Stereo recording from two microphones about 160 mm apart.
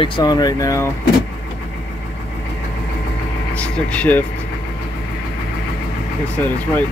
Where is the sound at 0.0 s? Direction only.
30° left (ahead or behind).